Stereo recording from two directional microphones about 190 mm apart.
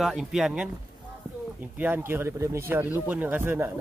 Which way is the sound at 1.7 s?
10° right (ahead or behind).